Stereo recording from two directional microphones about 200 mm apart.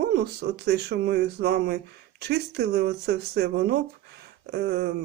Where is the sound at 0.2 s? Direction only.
55° right (ahead or behind).